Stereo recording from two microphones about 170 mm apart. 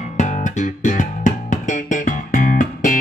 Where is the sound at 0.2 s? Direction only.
45° left (ahead or behind).